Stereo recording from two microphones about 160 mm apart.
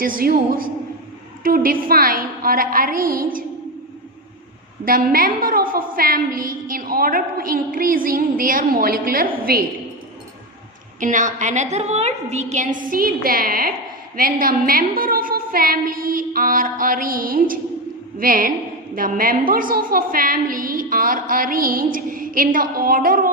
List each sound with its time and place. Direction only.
0.0 s a woman's voice: 65° right (ahead or behind)
4.8 s a woman's voice: 65° right (ahead or behind)
11.0 s a woman's voice: 50° right (ahead or behind)